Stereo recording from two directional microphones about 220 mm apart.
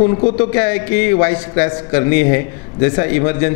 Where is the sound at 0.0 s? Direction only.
25° left (ahead or behind).